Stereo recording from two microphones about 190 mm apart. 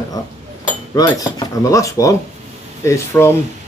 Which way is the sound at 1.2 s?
20° left (ahead or behind).